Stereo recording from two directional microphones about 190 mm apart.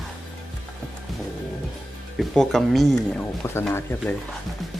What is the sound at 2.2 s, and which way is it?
Speech, centre (ahead or behind).